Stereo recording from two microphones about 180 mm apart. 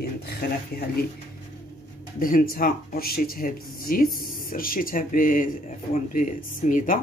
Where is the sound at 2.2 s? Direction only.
50° left (ahead or behind).